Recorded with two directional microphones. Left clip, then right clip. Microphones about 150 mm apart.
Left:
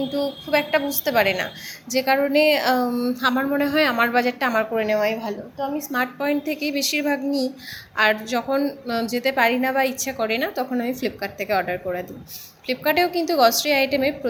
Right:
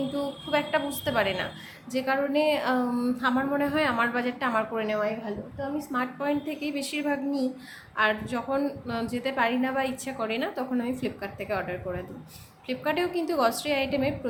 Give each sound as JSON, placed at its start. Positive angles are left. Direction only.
{"t": 0.1, "sound": "a woman's voice", "side_deg": 15}
{"t": 2.9, "sound": "a woman's voice", "side_deg": 15}